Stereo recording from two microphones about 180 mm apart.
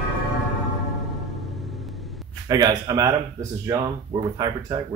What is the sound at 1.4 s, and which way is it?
Vehicle, centre (ahead or behind).